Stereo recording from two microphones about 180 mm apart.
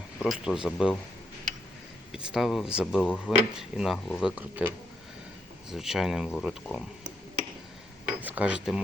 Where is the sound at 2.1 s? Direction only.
Centre (ahead or behind).